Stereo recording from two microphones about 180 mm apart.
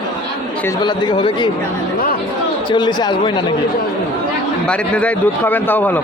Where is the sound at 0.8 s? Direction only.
25° left (ahead or behind).